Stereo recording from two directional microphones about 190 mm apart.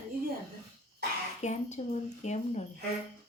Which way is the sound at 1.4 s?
35° left (ahead or behind).